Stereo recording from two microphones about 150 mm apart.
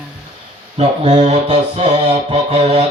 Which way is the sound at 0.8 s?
45° right (ahead or behind).